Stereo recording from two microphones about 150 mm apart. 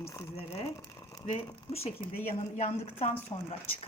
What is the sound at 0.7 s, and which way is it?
Crumpling, 20° left (ahead or behind).